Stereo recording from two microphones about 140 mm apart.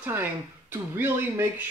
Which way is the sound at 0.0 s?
15° right (ahead or behind).